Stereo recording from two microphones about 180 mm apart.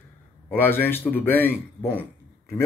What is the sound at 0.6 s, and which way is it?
Speech, 10° left (ahead or behind).